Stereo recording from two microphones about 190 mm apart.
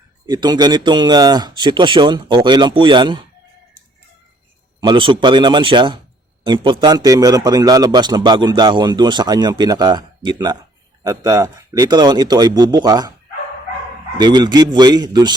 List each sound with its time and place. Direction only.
0.3 s a man's voice: 20° right (ahead or behind)
4.8 s a man's voice: 25° right (ahead or behind)
14.2 s a man's voice: 20° right (ahead or behind)